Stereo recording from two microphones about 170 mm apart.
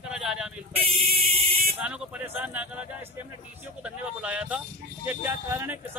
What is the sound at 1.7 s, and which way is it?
Speech, 10° right (ahead or behind).